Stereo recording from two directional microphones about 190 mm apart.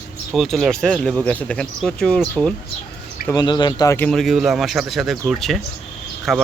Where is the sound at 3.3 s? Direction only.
20° left (ahead or behind).